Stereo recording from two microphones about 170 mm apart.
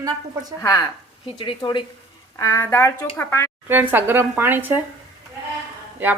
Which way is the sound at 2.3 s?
20° left (ahead or behind).